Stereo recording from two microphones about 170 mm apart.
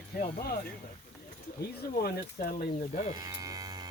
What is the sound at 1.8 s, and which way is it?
Speech, 65° left (ahead or behind).